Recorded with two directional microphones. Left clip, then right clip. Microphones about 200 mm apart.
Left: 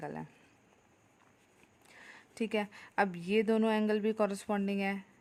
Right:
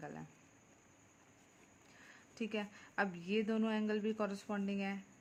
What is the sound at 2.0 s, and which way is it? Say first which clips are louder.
Speech: left 7 dB; 35° left (ahead or behind).